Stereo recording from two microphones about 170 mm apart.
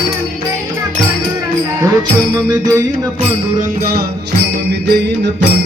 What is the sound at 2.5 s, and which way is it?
Music, 25° right (ahead or behind).